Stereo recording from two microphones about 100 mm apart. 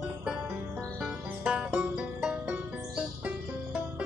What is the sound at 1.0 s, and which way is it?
Music, 10° right (ahead or behind).